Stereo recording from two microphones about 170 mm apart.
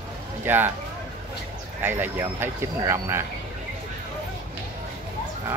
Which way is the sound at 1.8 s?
10° right (ahead or behind).